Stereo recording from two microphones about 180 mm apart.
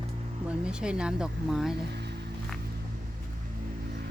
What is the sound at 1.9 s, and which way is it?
Music, 65° right (ahead or behind).